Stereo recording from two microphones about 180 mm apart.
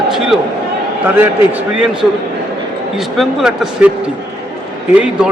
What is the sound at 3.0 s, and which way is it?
Speech, centre (ahead or behind).